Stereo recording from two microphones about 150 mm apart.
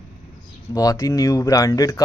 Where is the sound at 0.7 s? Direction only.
25° left (ahead or behind).